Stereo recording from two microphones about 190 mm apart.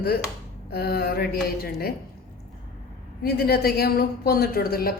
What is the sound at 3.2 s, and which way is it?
A woman's voice, 55° left (ahead or behind).